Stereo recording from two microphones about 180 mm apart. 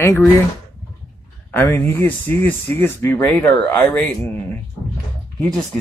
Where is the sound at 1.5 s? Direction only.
10° left (ahead or behind).